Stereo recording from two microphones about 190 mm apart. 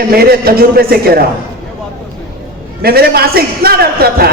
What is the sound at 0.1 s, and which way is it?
A woman's voice, 50° right (ahead or behind).